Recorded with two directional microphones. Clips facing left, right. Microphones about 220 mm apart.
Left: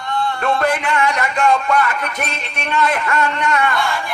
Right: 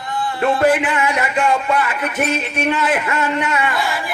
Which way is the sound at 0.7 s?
5° right (ahead or behind).